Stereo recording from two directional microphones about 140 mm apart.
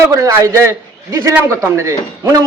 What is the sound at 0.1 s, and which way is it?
A man's voice, 25° right (ahead or behind).